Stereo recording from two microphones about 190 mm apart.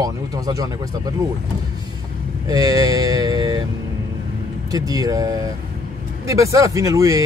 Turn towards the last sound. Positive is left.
turn(degrees=-15)  # may be behind; listen again after turning